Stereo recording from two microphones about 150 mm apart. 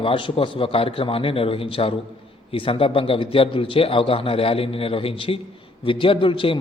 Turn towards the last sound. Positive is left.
turn(degrees=35)  # may be behind; listen again after turning